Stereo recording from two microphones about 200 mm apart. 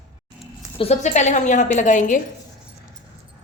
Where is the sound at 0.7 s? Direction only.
35° left (ahead or behind).